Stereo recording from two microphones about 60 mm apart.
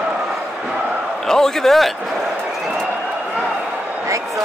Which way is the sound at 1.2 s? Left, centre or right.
Centre.